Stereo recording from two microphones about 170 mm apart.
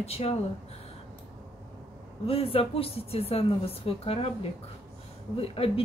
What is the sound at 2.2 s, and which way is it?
A woman's voice, 35° left (ahead or behind).